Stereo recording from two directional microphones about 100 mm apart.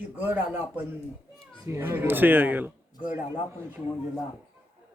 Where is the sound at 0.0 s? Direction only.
20° right (ahead or behind).